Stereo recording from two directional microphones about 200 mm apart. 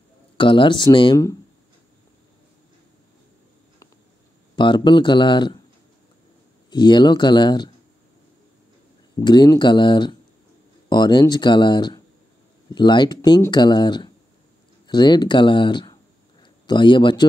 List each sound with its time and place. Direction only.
0.4 s speech: 25° left (ahead or behind)
4.6 s speech: 25° left (ahead or behind)
6.7 s speech: 20° left (ahead or behind)
9.2 s speech: 20° left (ahead or behind)